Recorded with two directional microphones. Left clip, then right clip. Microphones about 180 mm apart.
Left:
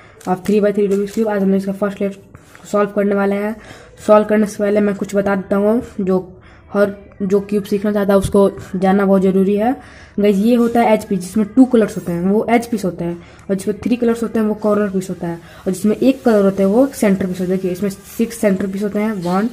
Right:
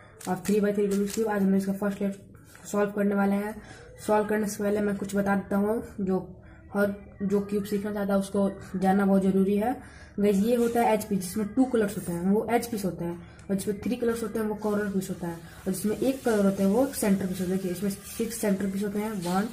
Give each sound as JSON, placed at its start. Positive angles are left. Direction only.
{"t": 0.3, "sound": "a woman's voice", "side_deg": 35}